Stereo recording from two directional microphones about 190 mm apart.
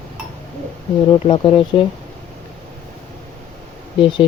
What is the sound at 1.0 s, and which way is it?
Speech, 25° left (ahead or behind).